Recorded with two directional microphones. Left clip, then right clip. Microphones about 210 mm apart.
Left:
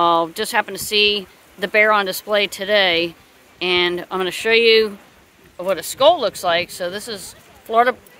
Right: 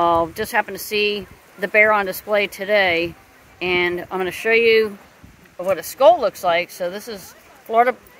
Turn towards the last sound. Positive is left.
turn(degrees=10)  # may be behind; listen again after turning